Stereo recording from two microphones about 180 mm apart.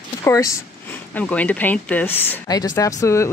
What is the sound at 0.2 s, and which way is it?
Speech, 15° left (ahead or behind).